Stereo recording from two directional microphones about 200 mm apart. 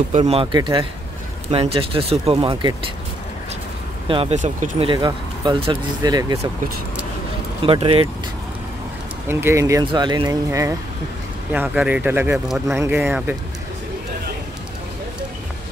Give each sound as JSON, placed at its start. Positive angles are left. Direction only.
{"t": 0.1, "sound": "speech", "side_deg": -30}
{"t": 4.1, "sound": "speech", "side_deg": -30}
{"t": 7.6, "sound": "speech", "side_deg": -25}
{"t": 9.3, "sound": "speech", "side_deg": -10}